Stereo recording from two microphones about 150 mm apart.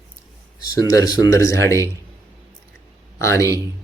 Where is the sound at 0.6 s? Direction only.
25° left (ahead or behind).